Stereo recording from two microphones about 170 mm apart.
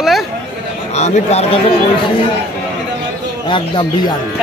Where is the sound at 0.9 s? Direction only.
40° left (ahead or behind).